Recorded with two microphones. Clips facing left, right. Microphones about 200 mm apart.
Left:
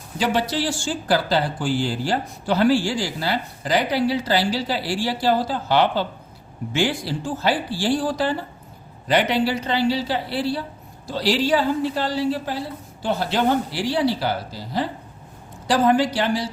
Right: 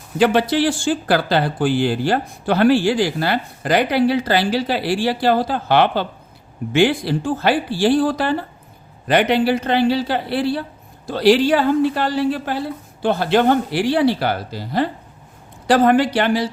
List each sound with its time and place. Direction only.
0.2 s speech: 60° right (ahead or behind)